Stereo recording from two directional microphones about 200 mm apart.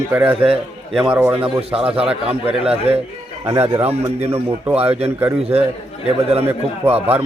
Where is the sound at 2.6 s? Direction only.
30° right (ahead or behind).